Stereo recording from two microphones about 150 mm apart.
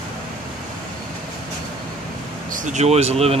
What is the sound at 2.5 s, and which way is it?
Speech, 55° right (ahead or behind).